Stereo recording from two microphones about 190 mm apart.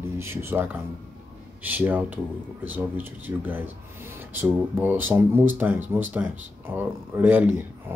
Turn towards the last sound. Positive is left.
turn(degrees=-10)  # may be behind; listen again after turning